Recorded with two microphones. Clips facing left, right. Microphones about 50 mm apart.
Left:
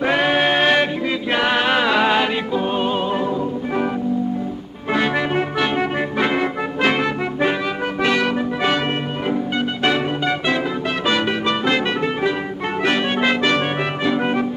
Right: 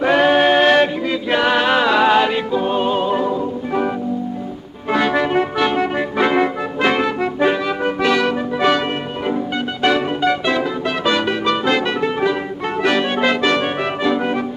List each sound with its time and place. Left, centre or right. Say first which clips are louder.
0.0 s a sound: right 4 dB; centre
1.3 s music: right 3 dB; centre
5.0 s music: right 4 dB; centre
6.1 s music: right 5 dB; centre
6.4 s music: right 2 dB; centre
9.8 s music: right 4 dB; centre
11.1 s music: right 2 dB; centre
12.8 s music: right 2 dB; centre